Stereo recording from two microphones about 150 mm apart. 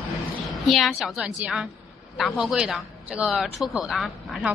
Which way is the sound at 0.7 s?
Centre (ahead or behind).